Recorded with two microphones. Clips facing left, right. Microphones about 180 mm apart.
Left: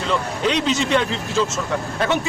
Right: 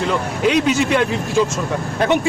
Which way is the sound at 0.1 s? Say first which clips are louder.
Right 1 dB; 10° right (ahead or behind).